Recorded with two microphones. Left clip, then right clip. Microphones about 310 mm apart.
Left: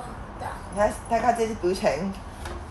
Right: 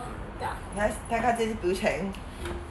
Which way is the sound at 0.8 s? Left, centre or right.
Left.